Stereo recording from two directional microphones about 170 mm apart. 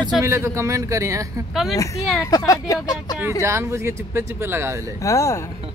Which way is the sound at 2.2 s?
20° left (ahead or behind).